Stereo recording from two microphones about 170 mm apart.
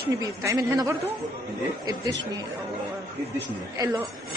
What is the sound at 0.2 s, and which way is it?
Speech, 20° right (ahead or behind).